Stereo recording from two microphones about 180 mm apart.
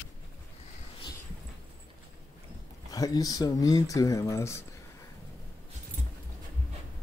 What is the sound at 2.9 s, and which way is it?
Speech, 20° left (ahead or behind).